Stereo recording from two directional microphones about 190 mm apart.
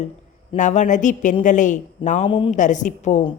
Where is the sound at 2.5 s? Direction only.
40° left (ahead or behind).